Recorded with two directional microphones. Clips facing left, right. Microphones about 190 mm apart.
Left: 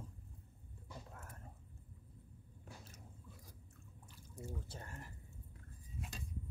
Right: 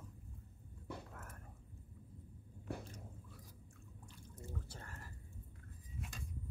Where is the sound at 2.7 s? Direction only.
60° right (ahead or behind).